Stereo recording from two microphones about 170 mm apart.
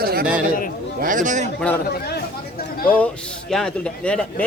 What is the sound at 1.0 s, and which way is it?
Speech, 50° right (ahead or behind).